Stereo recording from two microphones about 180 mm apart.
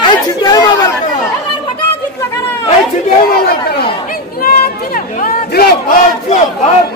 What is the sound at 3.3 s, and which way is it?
Speech, 55° left (ahead or behind).